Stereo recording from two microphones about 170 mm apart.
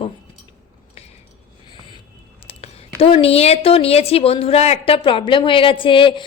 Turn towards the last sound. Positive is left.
turn(degrees=30)  # may be behind; listen again after turning